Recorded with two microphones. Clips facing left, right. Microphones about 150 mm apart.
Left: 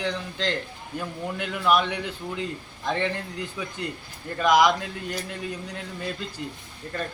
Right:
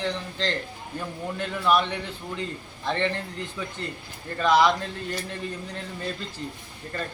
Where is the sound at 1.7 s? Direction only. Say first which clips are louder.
Left 1 dB; 10° left (ahead or behind).